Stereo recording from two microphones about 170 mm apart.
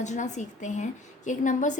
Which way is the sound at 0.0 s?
45° left (ahead or behind).